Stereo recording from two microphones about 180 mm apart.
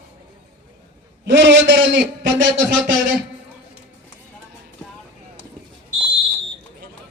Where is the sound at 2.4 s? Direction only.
90° right.